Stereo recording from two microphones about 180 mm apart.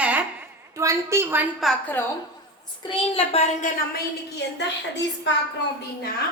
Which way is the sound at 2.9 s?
35° left (ahead or behind).